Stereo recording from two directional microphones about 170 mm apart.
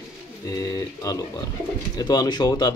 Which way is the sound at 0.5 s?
20° left (ahead or behind).